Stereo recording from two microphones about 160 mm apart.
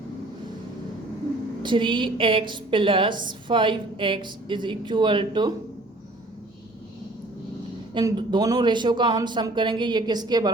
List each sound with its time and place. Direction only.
1.6 s a woman's voice: 30° right (ahead or behind)
7.9 s speech: 30° right (ahead or behind)